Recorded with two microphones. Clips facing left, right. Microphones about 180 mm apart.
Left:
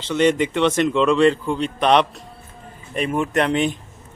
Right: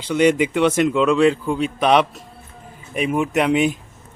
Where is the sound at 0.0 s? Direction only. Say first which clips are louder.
Right 1 dB; 10° right (ahead or behind).